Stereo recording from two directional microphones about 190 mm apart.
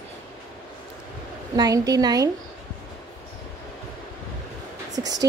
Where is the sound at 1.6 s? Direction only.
20° right (ahead or behind).